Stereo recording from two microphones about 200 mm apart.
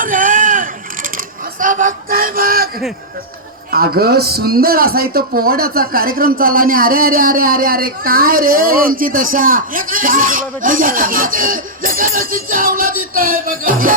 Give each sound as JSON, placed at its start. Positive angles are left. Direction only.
{"t": 0.0, "sound": "vehicle", "side_deg": -40}
{"t": 1.1, "sound": "a sound", "side_deg": -40}
{"t": 3.7, "sound": "a man's voice", "side_deg": -50}